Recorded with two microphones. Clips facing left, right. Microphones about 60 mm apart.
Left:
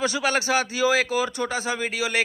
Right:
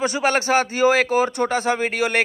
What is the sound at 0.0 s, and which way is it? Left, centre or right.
A man's voice, right.